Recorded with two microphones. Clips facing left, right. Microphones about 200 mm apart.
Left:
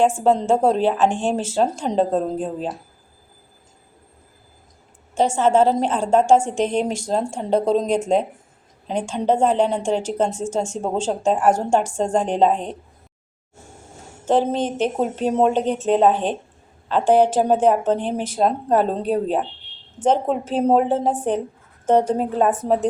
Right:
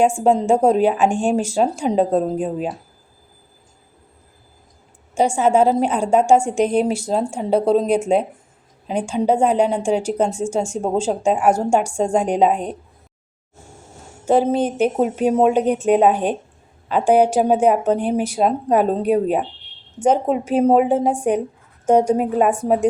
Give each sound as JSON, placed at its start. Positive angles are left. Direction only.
{"t": 0.2, "sound": "a woman's voice", "side_deg": -10}
{"t": 5.1, "sound": "a woman's voice", "side_deg": -10}
{"t": 14.3, "sound": "a woman's voice", "side_deg": -10}